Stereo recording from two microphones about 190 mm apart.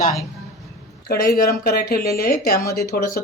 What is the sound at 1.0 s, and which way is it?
Speech, 55° left (ahead or behind).